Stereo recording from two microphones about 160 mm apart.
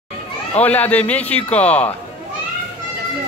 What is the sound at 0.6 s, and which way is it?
A man's voice, 10° left (ahead or behind).